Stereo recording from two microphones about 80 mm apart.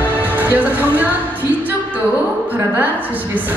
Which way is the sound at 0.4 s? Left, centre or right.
Right.